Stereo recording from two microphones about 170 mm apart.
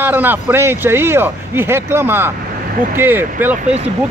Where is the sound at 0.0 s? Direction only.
10° right (ahead or behind).